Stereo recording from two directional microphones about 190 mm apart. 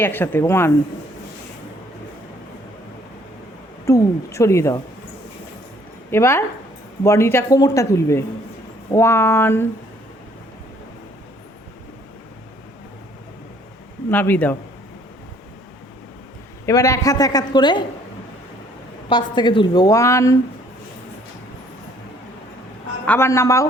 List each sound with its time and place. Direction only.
0.0 s speech: 10° left (ahead or behind)
3.8 s speech: 15° left (ahead or behind)
6.1 s speech: 15° left (ahead or behind)
14.1 s speech: 10° left (ahead or behind)
16.6 s a woman's voice: 15° left (ahead or behind)
19.0 s a woman's voice: 25° left (ahead or behind)
23.0 s speech: 10° left (ahead or behind)